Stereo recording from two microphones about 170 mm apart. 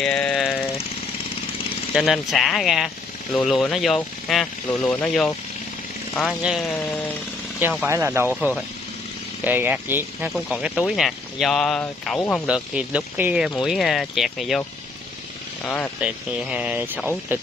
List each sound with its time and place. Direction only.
0.0 s vehicle: 5° left (ahead or behind)
2.0 s speech: centre (ahead or behind)
7.9 s speech: 15° right (ahead or behind)
8.4 s speech: centre (ahead or behind)
15.6 s speech: 5° left (ahead or behind)
16.0 s speech: 5° right (ahead or behind)